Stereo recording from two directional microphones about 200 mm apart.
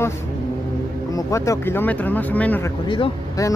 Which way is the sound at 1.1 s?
15° left (ahead or behind).